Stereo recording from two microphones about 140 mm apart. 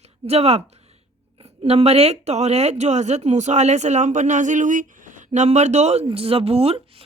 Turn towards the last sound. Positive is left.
turn(degrees=-45)  # may be behind; listen again after turning